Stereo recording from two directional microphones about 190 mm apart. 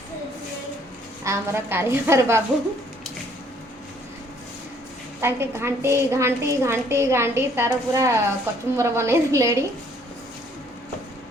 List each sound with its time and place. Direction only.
1.2 s a woman's voice: 15° right (ahead or behind)
5.2 s a woman's voice: 15° right (ahead or behind)